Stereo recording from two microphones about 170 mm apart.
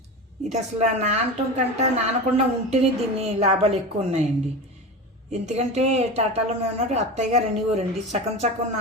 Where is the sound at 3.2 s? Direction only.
40° right (ahead or behind).